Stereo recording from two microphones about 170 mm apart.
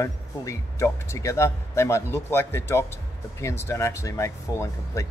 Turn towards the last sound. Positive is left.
turn(degrees=15)  # may be behind; listen again after turning